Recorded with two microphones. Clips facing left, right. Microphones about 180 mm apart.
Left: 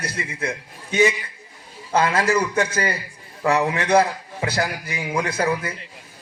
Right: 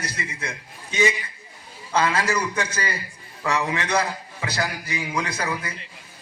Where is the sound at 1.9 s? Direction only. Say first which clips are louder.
Left 3 dB; 50° left (ahead or behind).